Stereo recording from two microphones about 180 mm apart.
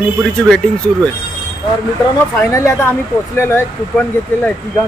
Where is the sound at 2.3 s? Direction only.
15° left (ahead or behind).